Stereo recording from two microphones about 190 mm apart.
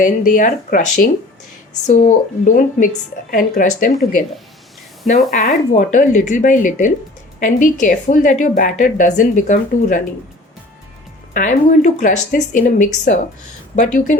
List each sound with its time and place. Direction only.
0.0 s a woman's voice: 45° left (ahead or behind)
5.3 s a woman's voice: 40° left (ahead or behind)
11.3 s a woman's voice: 40° left (ahead or behind)